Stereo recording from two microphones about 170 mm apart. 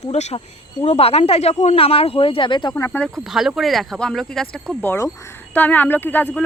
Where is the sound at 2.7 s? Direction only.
15° left (ahead or behind).